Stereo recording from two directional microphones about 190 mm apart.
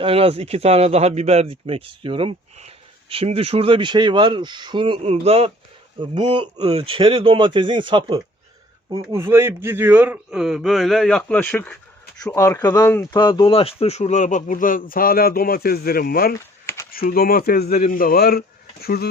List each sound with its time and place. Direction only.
0.0 s speech: 30° right (ahead or behind)
8.9 s a man's voice: 15° right (ahead or behind); by 19.0 s 55° left (ahead or behind)